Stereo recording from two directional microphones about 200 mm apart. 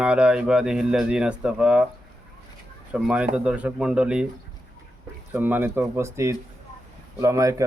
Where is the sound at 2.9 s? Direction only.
5° right (ahead or behind).